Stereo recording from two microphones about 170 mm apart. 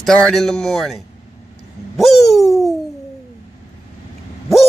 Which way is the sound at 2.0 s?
Centre (ahead or behind).